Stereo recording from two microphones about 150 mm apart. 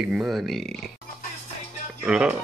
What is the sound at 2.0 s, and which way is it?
Speech, 5° right (ahead or behind).